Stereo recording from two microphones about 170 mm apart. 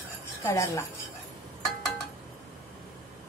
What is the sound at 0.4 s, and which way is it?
Speech, 15° left (ahead or behind).